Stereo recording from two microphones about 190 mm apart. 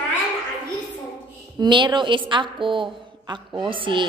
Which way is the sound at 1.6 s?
25° right (ahead or behind).